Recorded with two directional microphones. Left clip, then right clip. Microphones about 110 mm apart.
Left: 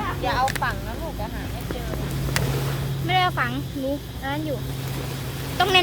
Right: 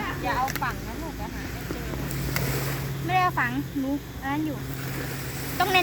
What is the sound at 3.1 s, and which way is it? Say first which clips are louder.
Vehicle: left 2 dB; 20° left (ahead or behind).